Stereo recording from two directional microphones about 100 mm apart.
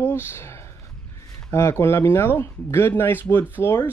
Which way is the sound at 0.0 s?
25° left (ahead or behind).